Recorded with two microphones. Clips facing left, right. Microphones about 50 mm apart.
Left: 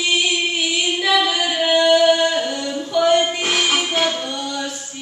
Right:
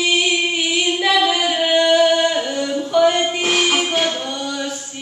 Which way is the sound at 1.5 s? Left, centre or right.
Centre.